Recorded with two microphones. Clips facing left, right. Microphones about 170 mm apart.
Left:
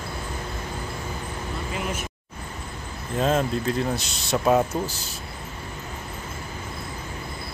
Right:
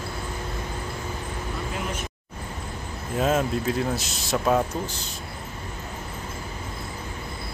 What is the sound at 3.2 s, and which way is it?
Speech, 5° right (ahead or behind).